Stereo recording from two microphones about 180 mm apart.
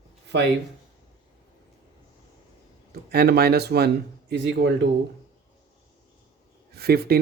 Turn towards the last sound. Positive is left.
turn(degrees=-60)  # may be behind; listen again after turning